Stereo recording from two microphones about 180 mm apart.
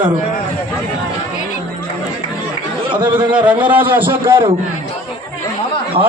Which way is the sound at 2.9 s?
25° right (ahead or behind).